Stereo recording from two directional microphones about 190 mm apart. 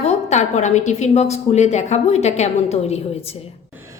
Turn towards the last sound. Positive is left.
turn(degrees=35)  # may be behind; listen again after turning